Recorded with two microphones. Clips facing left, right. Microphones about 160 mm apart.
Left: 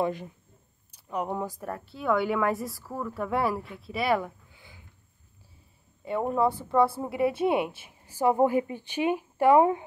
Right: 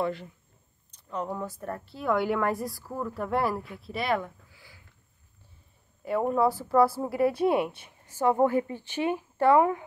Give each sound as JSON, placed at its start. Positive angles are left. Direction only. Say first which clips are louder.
{"t": 0.0, "sound": "speech", "louder": "left 1 dB", "side_deg": 15}
{"t": 1.6, "sound": "a woman's voice", "louder": "even", "side_deg": 0}
{"t": 4.5, "sound": "a sound", "louder": "left 2 dB", "side_deg": 20}
{"t": 6.0, "sound": "a woman's voice", "louder": "right 1 dB", "side_deg": 0}